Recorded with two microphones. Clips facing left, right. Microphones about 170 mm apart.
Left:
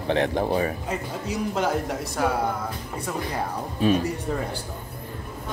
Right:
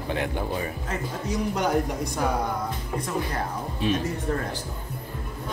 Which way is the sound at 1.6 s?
Centre (ahead or behind).